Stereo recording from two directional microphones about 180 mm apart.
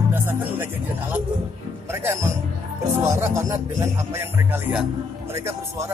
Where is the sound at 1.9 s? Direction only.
15° right (ahead or behind).